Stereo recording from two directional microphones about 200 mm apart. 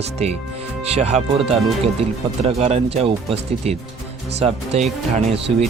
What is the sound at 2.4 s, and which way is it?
Speech, 30° right (ahead or behind).